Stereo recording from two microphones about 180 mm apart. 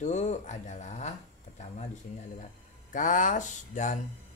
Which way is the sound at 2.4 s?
45° left (ahead or behind).